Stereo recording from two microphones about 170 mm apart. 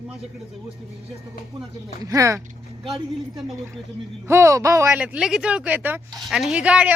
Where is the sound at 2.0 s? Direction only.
20° right (ahead or behind).